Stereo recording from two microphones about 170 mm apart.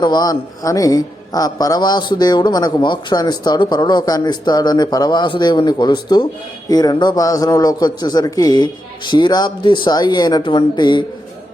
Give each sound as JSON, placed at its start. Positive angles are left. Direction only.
{"t": 0.0, "sound": "a man's voice", "side_deg": 25}